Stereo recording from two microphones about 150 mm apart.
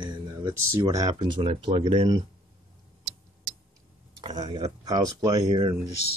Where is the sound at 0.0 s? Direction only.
30° right (ahead or behind).